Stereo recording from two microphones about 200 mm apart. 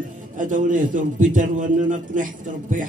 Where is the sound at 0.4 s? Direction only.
40° right (ahead or behind).